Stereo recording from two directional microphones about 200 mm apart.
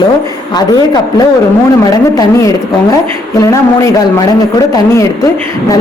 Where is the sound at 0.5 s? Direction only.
20° left (ahead or behind).